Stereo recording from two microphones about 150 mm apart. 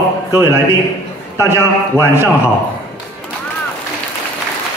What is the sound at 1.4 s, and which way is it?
Speech, 15° right (ahead or behind).